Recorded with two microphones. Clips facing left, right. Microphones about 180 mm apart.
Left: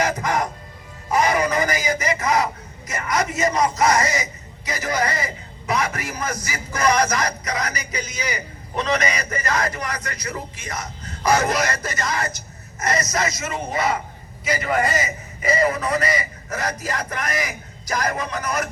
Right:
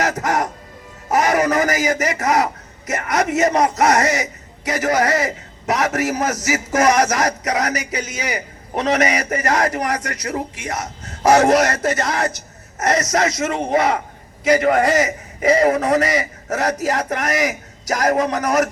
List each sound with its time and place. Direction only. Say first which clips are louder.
0.0 s music: right 2 dB; 75° right (ahead or behind)
1.1 s a man's voice: right 3 dB; 75° right (ahead or behind)